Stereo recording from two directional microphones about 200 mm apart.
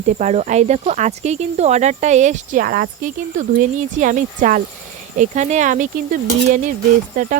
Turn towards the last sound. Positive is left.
turn(degrees=-45)  # may be behind; listen again after turning